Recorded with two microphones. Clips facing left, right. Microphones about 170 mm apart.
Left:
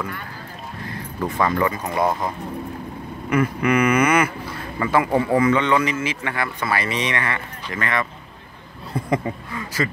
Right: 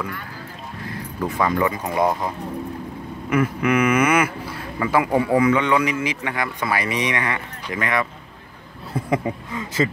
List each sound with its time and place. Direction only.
0.8 s speech: 10° right (ahead or behind)
9.5 s speech: 20° right (ahead or behind)